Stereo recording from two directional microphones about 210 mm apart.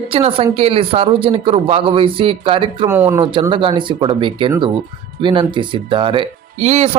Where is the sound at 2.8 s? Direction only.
10° right (ahead or behind).